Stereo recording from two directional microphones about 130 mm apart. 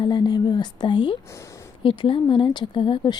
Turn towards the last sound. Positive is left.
turn(degrees=40)  # may be behind; listen again after turning